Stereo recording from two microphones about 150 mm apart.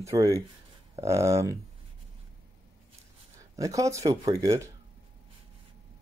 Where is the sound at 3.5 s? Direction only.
20° right (ahead or behind).